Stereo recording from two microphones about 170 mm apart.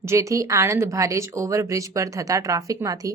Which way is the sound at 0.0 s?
15° right (ahead or behind).